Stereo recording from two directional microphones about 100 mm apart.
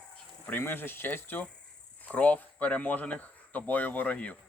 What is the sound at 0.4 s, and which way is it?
Speech, 20° left (ahead or behind).